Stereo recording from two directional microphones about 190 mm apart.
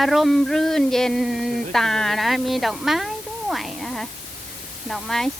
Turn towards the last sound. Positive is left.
turn(degrees=0)  # may be behind; listen again after turning